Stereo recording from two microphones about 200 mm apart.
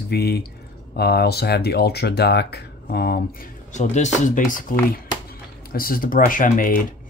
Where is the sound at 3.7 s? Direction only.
35° left (ahead or behind).